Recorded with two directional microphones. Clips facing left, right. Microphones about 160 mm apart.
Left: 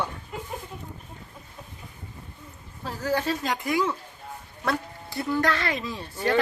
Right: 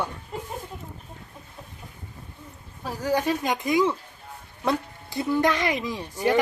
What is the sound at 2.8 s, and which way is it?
Speech, 10° right (ahead or behind).